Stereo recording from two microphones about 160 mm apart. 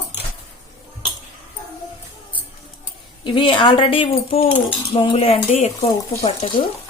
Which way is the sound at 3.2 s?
30° left (ahead or behind).